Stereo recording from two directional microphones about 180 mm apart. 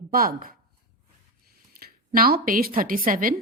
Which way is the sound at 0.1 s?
50° right (ahead or behind).